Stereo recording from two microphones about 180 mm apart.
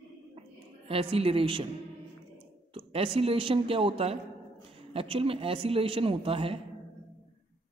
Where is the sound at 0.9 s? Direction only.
30° right (ahead or behind).